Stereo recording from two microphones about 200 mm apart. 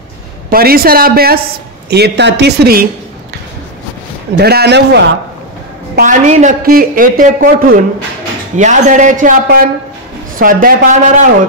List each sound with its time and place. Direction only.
0.5 s a woman's voice: 45° right (ahead or behind)
4.4 s speech: 55° right (ahead or behind)
5.9 s a woman's voice: 40° right (ahead or behind)